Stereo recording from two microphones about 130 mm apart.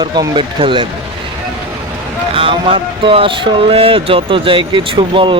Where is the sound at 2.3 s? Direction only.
45° right (ahead or behind).